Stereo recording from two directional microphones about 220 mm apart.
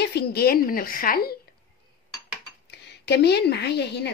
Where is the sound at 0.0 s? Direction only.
45° left (ahead or behind).